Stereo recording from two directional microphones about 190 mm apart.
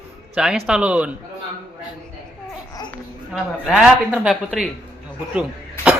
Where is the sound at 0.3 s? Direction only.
5° right (ahead or behind).